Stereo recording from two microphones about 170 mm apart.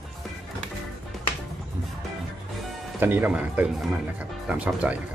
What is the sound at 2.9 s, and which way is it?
Speech, 10° right (ahead or behind).